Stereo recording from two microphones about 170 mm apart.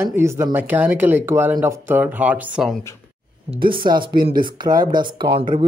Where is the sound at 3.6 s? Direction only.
30° right (ahead or behind).